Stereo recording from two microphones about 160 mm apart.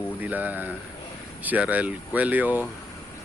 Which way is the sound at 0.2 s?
10° right (ahead or behind).